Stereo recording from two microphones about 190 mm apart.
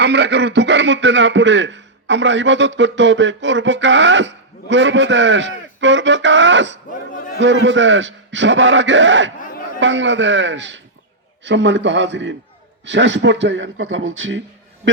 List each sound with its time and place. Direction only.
0.0 s a man's voice: 65° right (ahead or behind)
7.1 s a man's voice: 45° left (ahead or behind)
7.3 s a man's voice: 75° right (ahead or behind)